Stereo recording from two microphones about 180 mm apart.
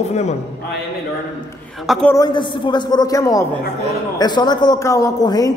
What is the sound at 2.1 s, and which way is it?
A man's voice, 25° left (ahead or behind).